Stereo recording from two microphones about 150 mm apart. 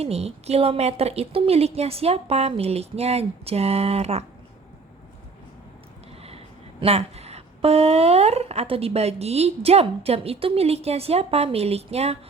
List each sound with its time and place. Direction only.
0.0 s speech: 45° right (ahead or behind)
6.8 s speech: 45° right (ahead or behind)